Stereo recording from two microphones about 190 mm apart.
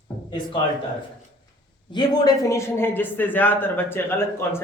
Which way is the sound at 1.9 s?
20° left (ahead or behind).